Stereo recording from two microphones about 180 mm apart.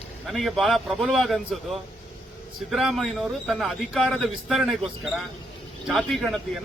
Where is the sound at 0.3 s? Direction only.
Centre (ahead or behind).